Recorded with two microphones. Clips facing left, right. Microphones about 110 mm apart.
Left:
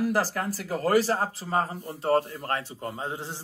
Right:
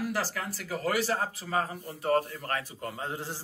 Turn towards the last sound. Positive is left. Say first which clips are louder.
# left 2 dB
turn(degrees=20)  # may be behind; listen again after turning